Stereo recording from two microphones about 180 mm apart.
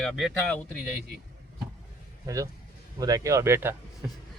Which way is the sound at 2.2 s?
20° right (ahead or behind).